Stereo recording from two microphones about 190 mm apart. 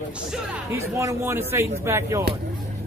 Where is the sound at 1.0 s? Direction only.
15° right (ahead or behind).